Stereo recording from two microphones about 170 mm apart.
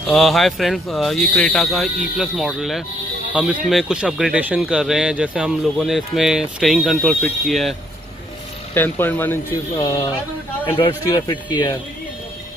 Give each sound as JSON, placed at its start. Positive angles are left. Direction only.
{"t": 0.0, "sound": "speech", "side_deg": 0}
{"t": 8.7, "sound": "speech", "side_deg": 10}